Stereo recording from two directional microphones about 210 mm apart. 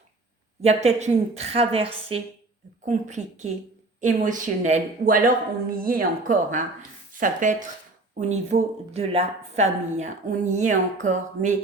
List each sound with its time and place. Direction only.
0.6 s a woman's voice: 30° right (ahead or behind)